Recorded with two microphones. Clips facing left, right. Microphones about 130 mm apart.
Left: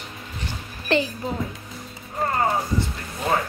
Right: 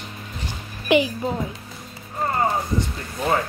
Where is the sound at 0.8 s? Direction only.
15° right (ahead or behind).